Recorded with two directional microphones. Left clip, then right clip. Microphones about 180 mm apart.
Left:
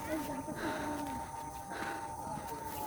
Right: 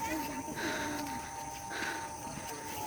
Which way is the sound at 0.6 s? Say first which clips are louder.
Right 2 dB; 10° left (ahead or behind).